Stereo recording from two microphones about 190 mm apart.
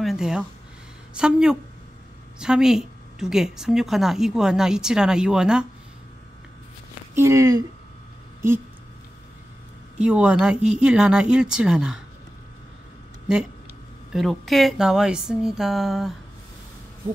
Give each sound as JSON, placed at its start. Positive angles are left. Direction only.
{"t": 0.0, "sound": "speech", "side_deg": 0}
{"t": 7.2, "sound": "speech", "side_deg": -15}
{"t": 9.9, "sound": "speech", "side_deg": -5}
{"t": 14.1, "sound": "speech", "side_deg": 0}